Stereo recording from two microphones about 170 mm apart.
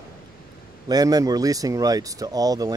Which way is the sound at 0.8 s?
20° right (ahead or behind).